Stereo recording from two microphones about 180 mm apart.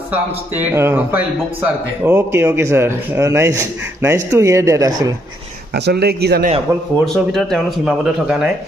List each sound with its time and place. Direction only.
0.7 s speech: 10° right (ahead or behind)
5.7 s speech: 65° right (ahead or behind)
6.7 s speech: 15° right (ahead or behind)
7.3 s speech: centre (ahead or behind)